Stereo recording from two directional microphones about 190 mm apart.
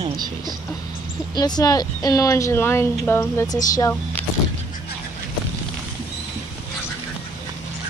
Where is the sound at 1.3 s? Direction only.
20° left (ahead or behind).